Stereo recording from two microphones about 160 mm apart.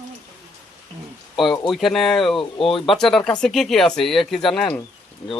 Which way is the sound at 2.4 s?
35° left (ahead or behind).